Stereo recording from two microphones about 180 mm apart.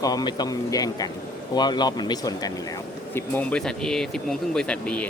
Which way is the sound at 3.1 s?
10° left (ahead or behind).